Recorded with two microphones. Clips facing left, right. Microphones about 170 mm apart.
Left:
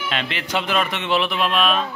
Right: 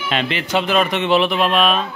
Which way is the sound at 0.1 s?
30° right (ahead or behind).